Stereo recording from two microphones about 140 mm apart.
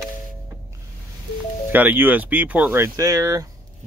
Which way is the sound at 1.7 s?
15° right (ahead or behind).